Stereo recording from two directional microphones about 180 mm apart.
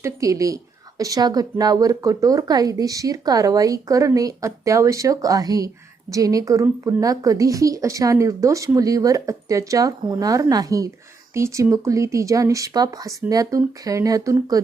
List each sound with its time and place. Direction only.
0.0 s a woman's voice: 20° right (ahead or behind)